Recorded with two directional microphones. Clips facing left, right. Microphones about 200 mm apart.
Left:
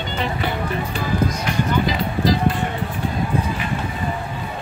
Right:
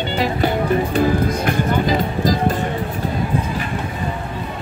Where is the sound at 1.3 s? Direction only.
55° right (ahead or behind).